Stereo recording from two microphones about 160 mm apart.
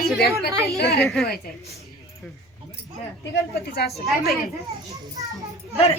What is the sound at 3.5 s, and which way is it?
Speech, 80° left.